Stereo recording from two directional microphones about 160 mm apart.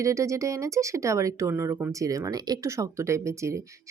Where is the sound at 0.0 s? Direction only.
20° right (ahead or behind).